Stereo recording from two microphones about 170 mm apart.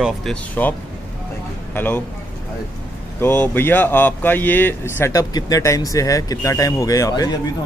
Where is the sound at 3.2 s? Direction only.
15° left (ahead or behind).